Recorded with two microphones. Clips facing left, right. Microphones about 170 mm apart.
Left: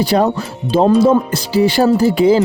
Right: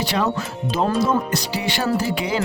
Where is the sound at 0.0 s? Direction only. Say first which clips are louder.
Left 8 dB; 35° left (ahead or behind).